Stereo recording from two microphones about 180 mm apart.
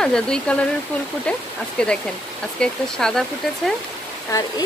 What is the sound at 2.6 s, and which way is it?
Speech, 5° left (ahead or behind).